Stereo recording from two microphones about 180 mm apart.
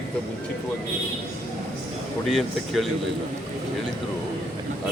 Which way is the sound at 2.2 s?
Centre (ahead or behind).